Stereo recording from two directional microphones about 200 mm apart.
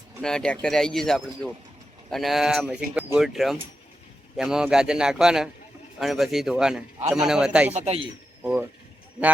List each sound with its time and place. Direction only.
0.2 s speech: 5° left (ahead or behind)
7.7 s speech: 30° right (ahead or behind)